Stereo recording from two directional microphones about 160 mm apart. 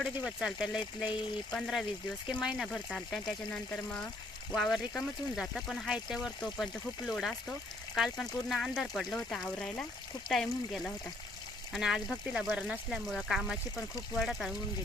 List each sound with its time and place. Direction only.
0.0 s speech: centre (ahead or behind)